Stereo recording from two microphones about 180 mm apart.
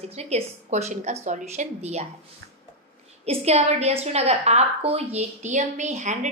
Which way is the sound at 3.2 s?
35° right (ahead or behind).